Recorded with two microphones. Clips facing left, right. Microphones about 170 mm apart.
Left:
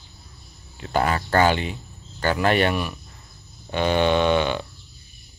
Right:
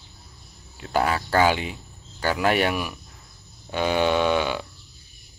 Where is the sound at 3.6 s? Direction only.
5° right (ahead or behind).